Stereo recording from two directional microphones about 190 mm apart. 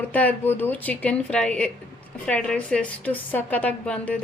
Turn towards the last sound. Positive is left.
turn(degrees=5)  # may be behind; listen again after turning